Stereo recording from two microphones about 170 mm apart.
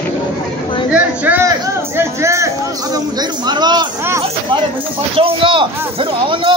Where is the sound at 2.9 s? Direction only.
25° right (ahead or behind).